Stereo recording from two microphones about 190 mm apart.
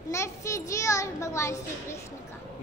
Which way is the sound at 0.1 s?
15° left (ahead or behind).